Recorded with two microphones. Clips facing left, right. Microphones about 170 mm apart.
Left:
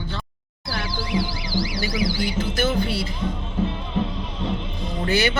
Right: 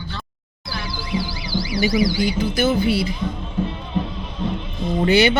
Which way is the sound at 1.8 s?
15° right (ahead or behind).